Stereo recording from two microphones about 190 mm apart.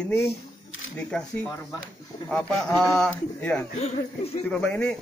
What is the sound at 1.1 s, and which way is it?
A man's voice, 5° left (ahead or behind).